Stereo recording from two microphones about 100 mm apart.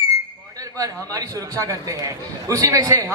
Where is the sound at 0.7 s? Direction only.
35° right (ahead or behind).